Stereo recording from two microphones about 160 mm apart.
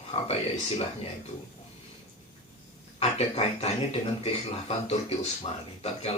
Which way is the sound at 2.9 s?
40° left (ahead or behind).